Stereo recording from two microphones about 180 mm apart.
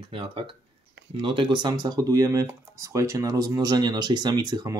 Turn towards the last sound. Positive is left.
turn(degrees=-20)  # may be behind; listen again after turning